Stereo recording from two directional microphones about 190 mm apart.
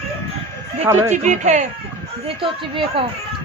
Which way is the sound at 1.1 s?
40° right (ahead or behind).